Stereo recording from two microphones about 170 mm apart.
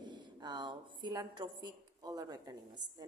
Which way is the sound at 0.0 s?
25° right (ahead or behind).